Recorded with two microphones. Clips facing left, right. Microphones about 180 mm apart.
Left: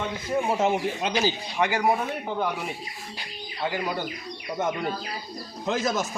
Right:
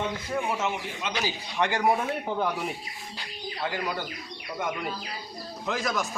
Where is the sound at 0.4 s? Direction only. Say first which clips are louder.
Left 6 dB; 35° left (ahead or behind).